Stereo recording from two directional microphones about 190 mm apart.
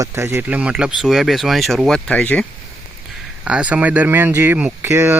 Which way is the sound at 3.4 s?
5° right (ahead or behind).